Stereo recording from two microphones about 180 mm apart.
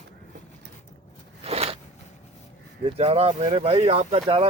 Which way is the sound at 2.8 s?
35° right (ahead or behind).